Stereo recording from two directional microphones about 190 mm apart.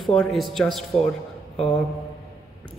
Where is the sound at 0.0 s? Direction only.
Centre (ahead or behind).